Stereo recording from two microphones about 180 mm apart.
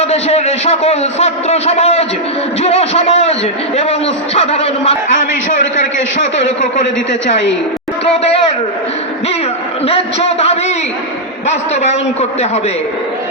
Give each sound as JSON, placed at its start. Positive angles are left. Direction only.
{"t": 0.0, "sound": "a man's voice", "side_deg": 35}
{"t": 4.4, "sound": "a man's voice", "side_deg": 35}
{"t": 8.0, "sound": "a man's voice", "side_deg": 35}
{"t": 9.8, "sound": "a man's voice", "side_deg": 35}